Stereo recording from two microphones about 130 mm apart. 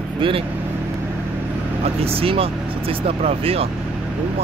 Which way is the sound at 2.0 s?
45° right (ahead or behind).